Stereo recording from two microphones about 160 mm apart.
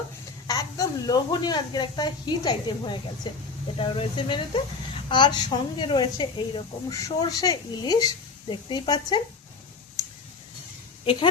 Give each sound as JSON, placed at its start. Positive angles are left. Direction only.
{"t": 0.4, "sound": "speech", "side_deg": 20}
{"t": 11.0, "sound": "speech", "side_deg": 35}